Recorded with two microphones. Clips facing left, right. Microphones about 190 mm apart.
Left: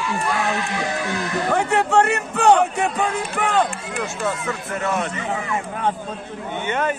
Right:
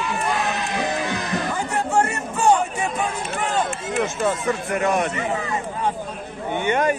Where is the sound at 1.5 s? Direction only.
65° left (ahead or behind).